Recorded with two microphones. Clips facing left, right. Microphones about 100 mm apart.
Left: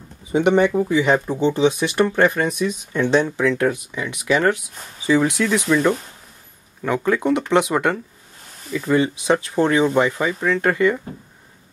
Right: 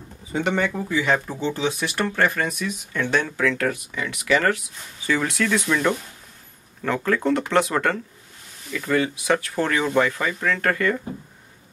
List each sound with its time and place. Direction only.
0.3 s speech: 15° left (ahead or behind)